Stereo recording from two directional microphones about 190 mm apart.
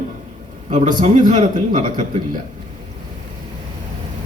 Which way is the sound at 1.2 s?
40° right (ahead or behind).